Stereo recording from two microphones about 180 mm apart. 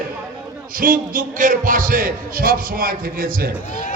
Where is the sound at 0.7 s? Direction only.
50° right (ahead or behind).